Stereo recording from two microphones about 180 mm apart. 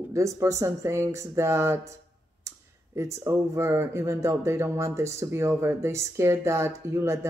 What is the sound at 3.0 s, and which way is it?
Speech, 15° right (ahead or behind).